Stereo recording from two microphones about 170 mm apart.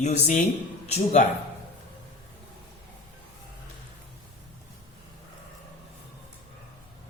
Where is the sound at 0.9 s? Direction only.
45° left (ahead or behind).